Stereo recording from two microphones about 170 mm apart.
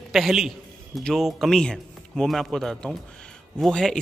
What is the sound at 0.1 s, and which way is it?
A man's voice, centre (ahead or behind).